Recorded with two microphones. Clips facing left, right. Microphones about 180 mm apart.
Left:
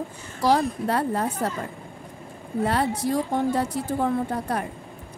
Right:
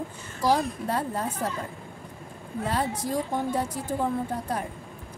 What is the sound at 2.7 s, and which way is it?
Speech, 70° left (ahead or behind).